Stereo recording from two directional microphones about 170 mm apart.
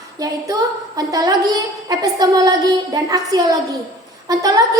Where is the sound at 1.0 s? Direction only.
20° right (ahead or behind).